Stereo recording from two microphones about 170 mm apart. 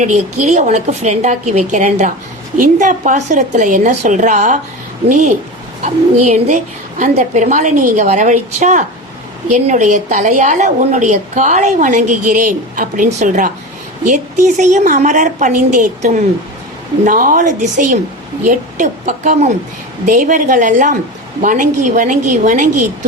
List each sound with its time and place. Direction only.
0.0 s a woman's voice: 45° right (ahead or behind)
5.8 s a woman's voice: 45° right (ahead or behind)